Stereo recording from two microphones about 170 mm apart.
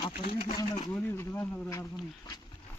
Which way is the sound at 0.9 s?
15° left (ahead or behind).